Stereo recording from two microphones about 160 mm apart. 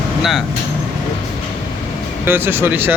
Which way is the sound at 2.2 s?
15° right (ahead or behind).